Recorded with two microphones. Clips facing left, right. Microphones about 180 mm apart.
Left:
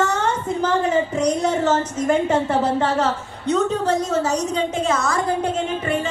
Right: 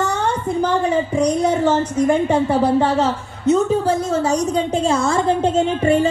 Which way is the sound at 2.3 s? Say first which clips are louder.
Right 3 dB; 10° right (ahead or behind).